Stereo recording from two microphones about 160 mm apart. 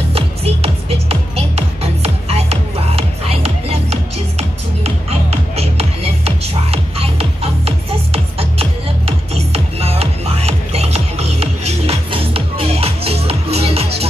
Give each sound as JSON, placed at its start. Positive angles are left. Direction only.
{"t": 0.1, "sound": "music", "side_deg": -40}